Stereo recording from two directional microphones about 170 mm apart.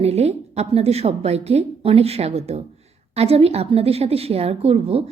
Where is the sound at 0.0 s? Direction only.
40° right (ahead or behind).